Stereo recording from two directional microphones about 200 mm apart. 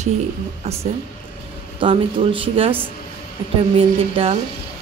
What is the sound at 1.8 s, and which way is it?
Speech, 25° right (ahead or behind).